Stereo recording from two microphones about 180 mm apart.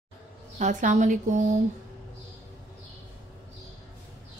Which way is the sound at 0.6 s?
45° right (ahead or behind).